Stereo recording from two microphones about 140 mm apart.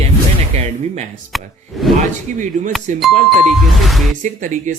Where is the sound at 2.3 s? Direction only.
65° right (ahead or behind).